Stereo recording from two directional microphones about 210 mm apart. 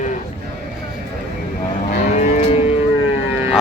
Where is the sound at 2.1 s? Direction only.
35° left (ahead or behind).